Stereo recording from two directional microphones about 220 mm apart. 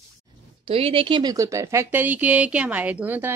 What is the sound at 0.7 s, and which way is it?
Speech, 25° right (ahead or behind).